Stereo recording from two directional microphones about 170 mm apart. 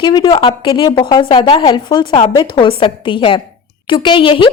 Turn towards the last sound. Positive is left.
turn(degrees=30)  # may be behind; listen again after turning